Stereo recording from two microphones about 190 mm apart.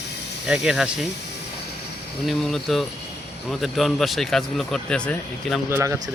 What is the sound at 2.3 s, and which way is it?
Speech, centre (ahead or behind).